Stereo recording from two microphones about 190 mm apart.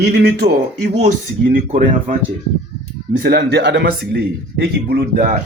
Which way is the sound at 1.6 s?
50° right (ahead or behind).